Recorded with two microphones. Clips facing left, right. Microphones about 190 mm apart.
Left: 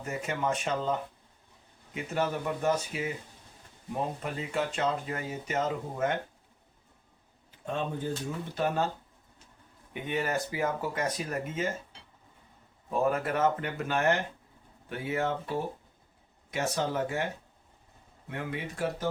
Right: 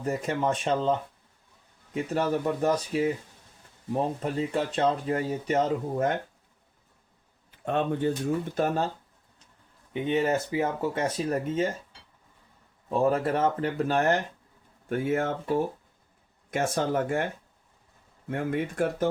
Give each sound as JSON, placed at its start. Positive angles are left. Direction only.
{"t": 0.0, "sound": "speech", "side_deg": -35}
{"t": 2.0, "sound": "speech", "side_deg": -35}
{"t": 4.2, "sound": "speech", "side_deg": -35}
{"t": 7.6, "sound": "speech", "side_deg": -65}
{"t": 8.5, "sound": "speech", "side_deg": -40}
{"t": 9.9, "sound": "speech", "side_deg": -20}
{"t": 13.0, "sound": "speech", "side_deg": -30}
{"t": 14.8, "sound": "speech", "side_deg": -50}
{"t": 18.3, "sound": "speech", "side_deg": -50}